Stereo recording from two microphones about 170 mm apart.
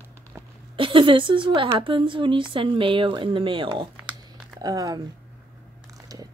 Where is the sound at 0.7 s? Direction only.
30° right (ahead or behind).